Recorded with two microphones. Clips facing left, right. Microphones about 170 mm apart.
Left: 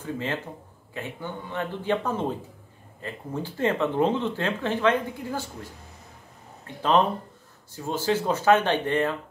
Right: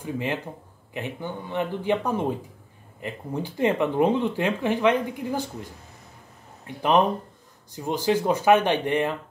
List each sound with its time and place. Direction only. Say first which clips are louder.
0.0 s speech: right 2 dB; 15° right (ahead or behind)
6.8 s speech: right 1 dB; 15° right (ahead or behind)